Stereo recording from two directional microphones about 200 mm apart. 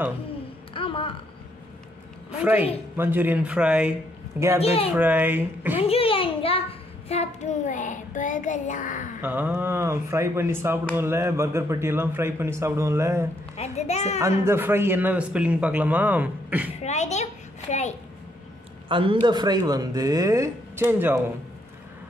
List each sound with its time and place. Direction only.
0.7 s a sound: 25° left (ahead or behind)
2.4 s a man's voice: 10° right (ahead or behind)
4.6 s child singing: 30° left (ahead or behind)
4.9 s a man's voice: 10° right (ahead or behind)
5.8 s a sound: 30° left (ahead or behind)
7.1 s child singing: 35° left (ahead or behind)
9.2 s a man's voice: 10° right (ahead or behind)
13.6 s child singing: 35° left (ahead or behind)
14.2 s a man's voice: 10° right (ahead or behind)
16.8 s a child's voice: 35° left (ahead or behind)
18.9 s speech: 25° right (ahead or behind)